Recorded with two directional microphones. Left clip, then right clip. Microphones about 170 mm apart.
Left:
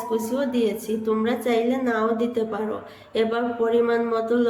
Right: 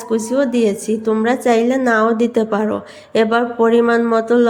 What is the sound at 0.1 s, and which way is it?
A woman's voice, 45° right (ahead or behind).